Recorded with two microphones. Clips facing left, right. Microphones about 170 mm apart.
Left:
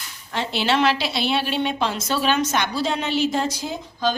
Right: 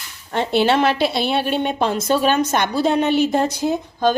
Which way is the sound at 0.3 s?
50° right (ahead or behind).